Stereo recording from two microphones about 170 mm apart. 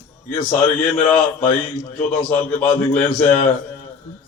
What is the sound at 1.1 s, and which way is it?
A man's voice, 50° left (ahead or behind).